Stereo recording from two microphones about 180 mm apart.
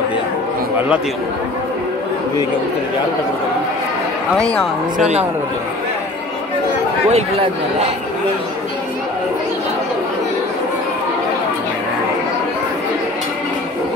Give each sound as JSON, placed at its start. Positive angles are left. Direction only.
{"t": 7.1, "sound": "a man's voice", "side_deg": -35}